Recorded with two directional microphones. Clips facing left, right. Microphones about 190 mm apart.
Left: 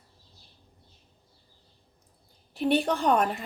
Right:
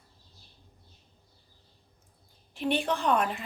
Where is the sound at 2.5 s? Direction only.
40° left (ahead or behind).